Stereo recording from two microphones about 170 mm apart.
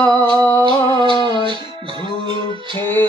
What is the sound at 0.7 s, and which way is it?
Music, 30° right (ahead or behind).